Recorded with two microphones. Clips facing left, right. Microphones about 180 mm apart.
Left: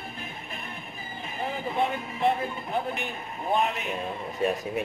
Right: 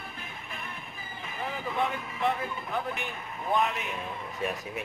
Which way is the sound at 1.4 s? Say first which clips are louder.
Left 3 dB; 25° left (ahead or behind).